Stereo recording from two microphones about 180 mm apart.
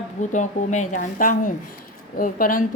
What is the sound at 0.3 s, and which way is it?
Speech, 40° left (ahead or behind).